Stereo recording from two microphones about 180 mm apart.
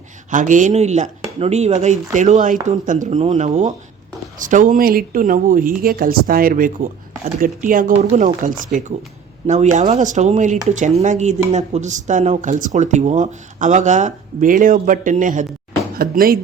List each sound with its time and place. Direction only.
0.3 s speech: 45° right (ahead or behind)